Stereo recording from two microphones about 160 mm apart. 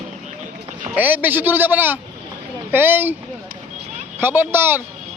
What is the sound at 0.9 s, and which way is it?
A man's voice, 10° right (ahead or behind).